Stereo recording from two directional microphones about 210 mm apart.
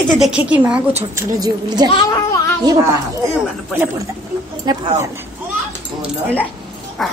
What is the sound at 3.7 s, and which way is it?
Speech, 10° right (ahead or behind).